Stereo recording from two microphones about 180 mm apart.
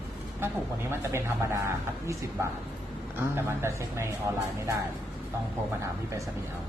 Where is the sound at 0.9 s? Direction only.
15° right (ahead or behind).